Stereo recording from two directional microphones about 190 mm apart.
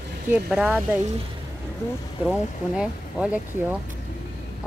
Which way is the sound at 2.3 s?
5° right (ahead or behind).